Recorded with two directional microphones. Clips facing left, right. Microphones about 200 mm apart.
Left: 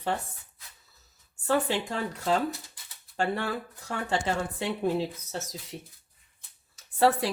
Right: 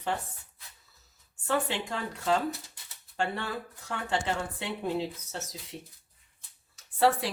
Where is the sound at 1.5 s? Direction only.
35° left (ahead or behind).